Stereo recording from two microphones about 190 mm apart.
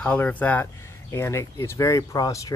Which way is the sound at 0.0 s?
5° left (ahead or behind).